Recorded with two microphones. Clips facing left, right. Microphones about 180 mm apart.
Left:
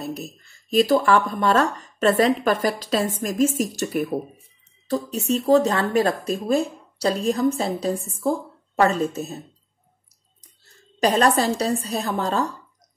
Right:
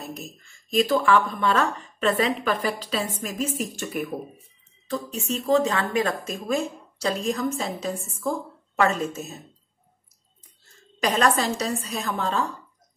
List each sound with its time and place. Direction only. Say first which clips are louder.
0.0 s a woman's voice: left 6 dB; 35° left (ahead or behind)
10.8 s speech: left 4 dB; 35° left (ahead or behind)